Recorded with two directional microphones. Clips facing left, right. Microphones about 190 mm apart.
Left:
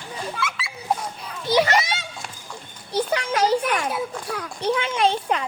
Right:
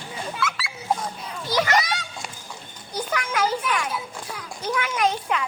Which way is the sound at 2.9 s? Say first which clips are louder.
Left 5 dB; 30° left (ahead or behind).